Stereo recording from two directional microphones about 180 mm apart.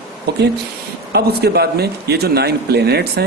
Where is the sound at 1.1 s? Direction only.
65° right (ahead or behind).